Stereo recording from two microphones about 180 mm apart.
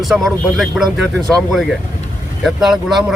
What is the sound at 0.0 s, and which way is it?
Speech, centre (ahead or behind).